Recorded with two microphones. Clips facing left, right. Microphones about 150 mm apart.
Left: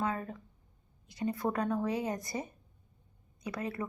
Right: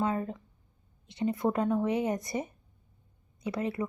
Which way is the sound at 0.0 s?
20° right (ahead or behind).